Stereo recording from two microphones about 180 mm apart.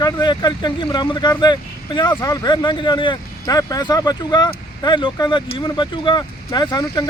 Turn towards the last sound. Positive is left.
turn(degrees=25)  # may be behind; listen again after turning